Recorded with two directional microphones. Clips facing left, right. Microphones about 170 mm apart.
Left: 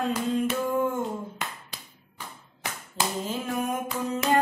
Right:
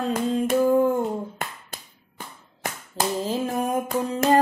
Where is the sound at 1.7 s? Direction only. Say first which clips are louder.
Right 3 dB; 50° right (ahead or behind).